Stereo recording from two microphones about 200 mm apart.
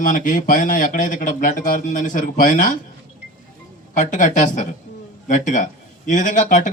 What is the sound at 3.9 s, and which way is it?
Speech, 40° left (ahead or behind).